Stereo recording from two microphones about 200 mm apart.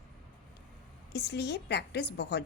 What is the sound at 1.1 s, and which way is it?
A woman's voice, 55° left (ahead or behind).